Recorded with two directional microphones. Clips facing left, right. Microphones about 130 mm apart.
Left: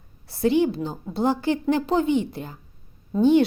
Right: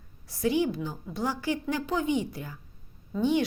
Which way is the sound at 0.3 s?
30° left (ahead or behind).